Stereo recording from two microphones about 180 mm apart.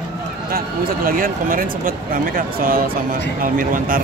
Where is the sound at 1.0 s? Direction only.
50° right (ahead or behind).